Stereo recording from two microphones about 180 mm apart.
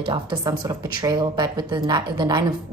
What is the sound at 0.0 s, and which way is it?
A woman's voice, 25° right (ahead or behind).